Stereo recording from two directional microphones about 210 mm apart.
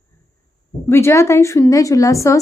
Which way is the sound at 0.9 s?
10° left (ahead or behind).